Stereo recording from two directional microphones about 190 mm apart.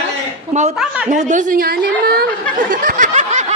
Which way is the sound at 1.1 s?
45° right (ahead or behind).